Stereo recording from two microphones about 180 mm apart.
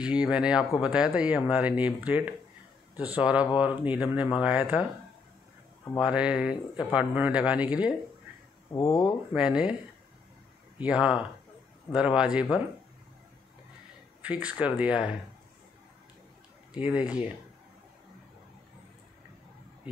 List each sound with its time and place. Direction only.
0.0 s speech: 5° right (ahead or behind)
5.9 s speech: 5° right (ahead or behind)
8.7 s speech: 20° left (ahead or behind)
9.3 s speech: 5° right (ahead or behind)
10.8 s speech: 5° right (ahead or behind)
14.2 s speech: 5° right (ahead or behind)
16.7 s speech: 5° right (ahead or behind)